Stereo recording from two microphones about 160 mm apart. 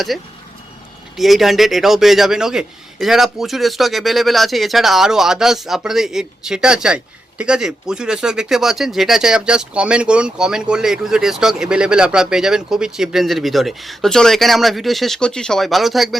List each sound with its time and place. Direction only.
0.1 s speech: centre (ahead or behind)